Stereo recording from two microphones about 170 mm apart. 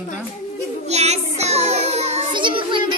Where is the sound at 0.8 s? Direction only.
40° right (ahead or behind).